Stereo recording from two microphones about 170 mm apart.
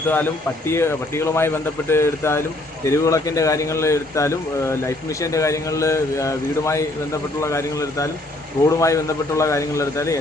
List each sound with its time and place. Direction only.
0.1 s a man's voice: 10° left (ahead or behind)